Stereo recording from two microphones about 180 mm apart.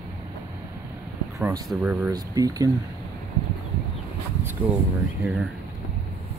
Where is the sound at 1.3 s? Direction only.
15° right (ahead or behind).